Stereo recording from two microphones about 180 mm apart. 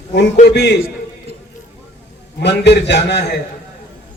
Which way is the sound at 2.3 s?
70° left (ahead or behind).